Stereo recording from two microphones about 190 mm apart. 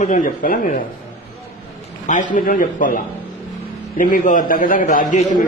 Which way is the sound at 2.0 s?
40° left (ahead or behind).